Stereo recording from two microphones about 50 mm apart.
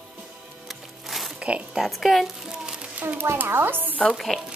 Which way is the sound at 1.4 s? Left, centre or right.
Right.